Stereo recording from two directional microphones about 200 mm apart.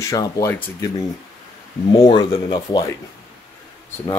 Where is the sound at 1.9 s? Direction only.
25° left (ahead or behind).